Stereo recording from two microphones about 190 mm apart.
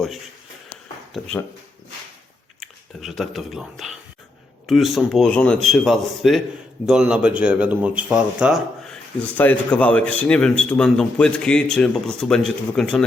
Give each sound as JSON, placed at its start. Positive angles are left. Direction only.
{"t": 2.6, "sound": "a man's voice", "side_deg": 0}
{"t": 9.4, "sound": "a man's voice", "side_deg": 10}